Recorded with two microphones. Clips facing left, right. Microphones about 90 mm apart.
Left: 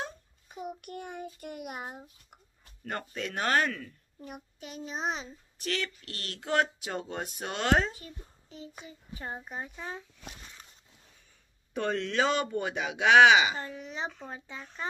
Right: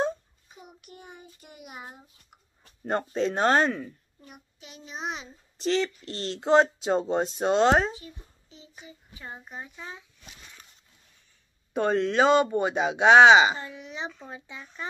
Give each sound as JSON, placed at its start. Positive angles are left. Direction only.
{"t": 0.7, "sound": "a child's voice", "side_deg": 55}
{"t": 2.8, "sound": "speech", "side_deg": -25}
{"t": 4.2, "sound": "a child's voice", "side_deg": 45}
{"t": 5.6, "sound": "speech", "side_deg": -25}
{"t": 8.0, "sound": "a child's voice", "side_deg": 45}
{"t": 11.7, "sound": "speech", "side_deg": -20}
{"t": 13.6, "sound": "a child's voice", "side_deg": 40}